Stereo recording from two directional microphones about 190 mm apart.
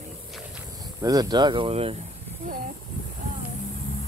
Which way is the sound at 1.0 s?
20° right (ahead or behind).